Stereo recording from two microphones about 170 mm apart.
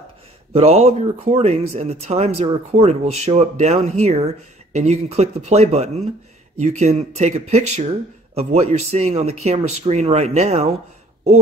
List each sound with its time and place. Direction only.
0.5 s speech: 35° right (ahead or behind)